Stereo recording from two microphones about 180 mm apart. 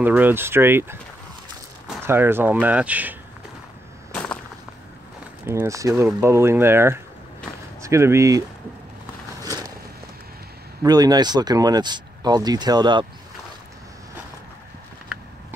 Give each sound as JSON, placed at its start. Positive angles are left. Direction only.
{"t": 0.0, "sound": "speech", "side_deg": -10}
{"t": 2.0, "sound": "speech", "side_deg": -10}
{"t": 4.1, "sound": "whip", "side_deg": 5}
{"t": 5.5, "sound": "speech", "side_deg": -15}
{"t": 9.4, "sound": "vehicle", "side_deg": -20}
{"t": 10.8, "sound": "speech", "side_deg": -20}